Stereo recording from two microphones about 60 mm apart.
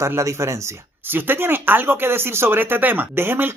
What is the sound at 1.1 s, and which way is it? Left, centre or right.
Speech, right.